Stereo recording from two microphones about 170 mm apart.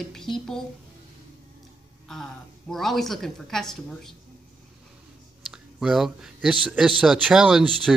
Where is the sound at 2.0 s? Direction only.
Centre (ahead or behind).